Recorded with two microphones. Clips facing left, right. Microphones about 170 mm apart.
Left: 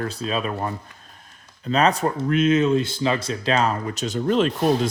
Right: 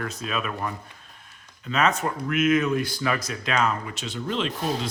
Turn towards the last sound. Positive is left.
turn(degrees=45)  # may be behind; listen again after turning